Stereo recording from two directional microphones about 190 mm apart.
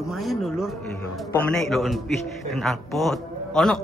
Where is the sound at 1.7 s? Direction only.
Centre (ahead or behind).